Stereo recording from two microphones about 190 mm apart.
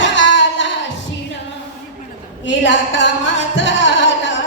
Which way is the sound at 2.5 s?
75° left (ahead or behind).